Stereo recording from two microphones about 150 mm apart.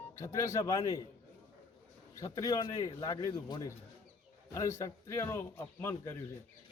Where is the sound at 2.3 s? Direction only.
20° left (ahead or behind).